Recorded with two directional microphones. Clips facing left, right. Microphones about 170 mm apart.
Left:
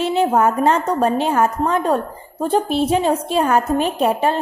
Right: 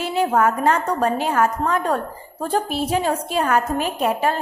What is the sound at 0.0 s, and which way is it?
A woman's voice, 25° left (ahead or behind).